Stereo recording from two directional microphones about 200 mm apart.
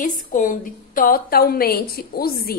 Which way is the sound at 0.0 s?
40° left (ahead or behind).